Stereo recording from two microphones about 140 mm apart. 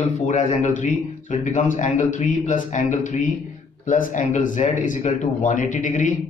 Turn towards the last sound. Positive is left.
turn(degrees=65)  # may be behind; listen again after turning